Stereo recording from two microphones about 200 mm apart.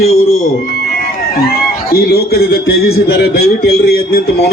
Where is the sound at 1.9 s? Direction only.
50° left (ahead or behind).